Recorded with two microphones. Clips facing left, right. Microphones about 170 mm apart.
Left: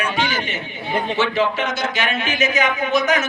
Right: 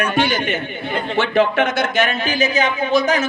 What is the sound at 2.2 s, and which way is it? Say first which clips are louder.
Speech: right 2 dB; 35° right (ahead or behind).